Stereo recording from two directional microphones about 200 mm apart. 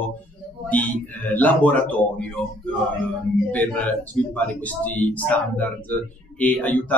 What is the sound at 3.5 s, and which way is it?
Speech, 5° left (ahead or behind).